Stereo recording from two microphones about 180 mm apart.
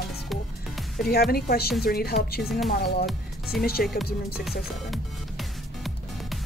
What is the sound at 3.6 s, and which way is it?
Speech, 60° left (ahead or behind).